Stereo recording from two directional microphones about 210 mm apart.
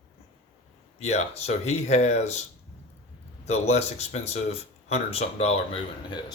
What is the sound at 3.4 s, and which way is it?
Speech, 30° left (ahead or behind).